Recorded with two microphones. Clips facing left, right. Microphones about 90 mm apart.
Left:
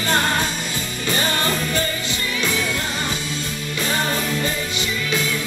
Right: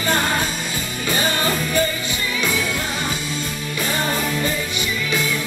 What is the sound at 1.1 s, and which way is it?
Music, 10° right (ahead or behind).